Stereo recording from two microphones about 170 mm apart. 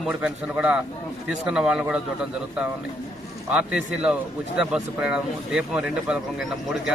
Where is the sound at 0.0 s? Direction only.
5° right (ahead or behind).